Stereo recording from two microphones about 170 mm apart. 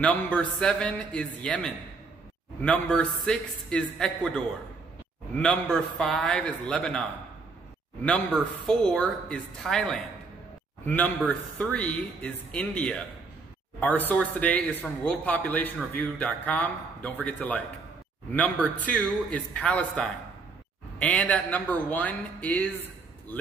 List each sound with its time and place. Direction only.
0.0 s a man's voice: 5° left (ahead or behind)
8.6 s a man's voice: 5° left (ahead or behind)